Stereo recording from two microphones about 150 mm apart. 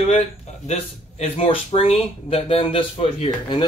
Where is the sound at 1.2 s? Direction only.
40° left (ahead or behind).